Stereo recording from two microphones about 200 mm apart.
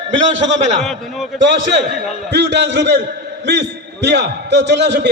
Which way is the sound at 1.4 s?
65° right (ahead or behind).